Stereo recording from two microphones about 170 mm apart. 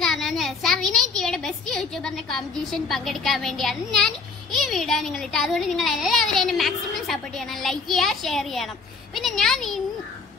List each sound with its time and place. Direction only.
0.0 s a woman's voice: centre (ahead or behind)